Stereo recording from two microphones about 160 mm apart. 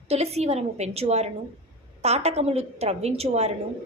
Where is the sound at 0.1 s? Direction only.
40° right (ahead or behind).